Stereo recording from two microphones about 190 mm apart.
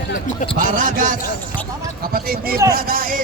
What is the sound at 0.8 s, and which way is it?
Basketball bounce, 45° right (ahead or behind).